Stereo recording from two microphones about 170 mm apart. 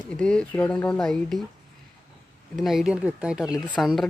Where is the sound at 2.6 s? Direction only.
Centre (ahead or behind).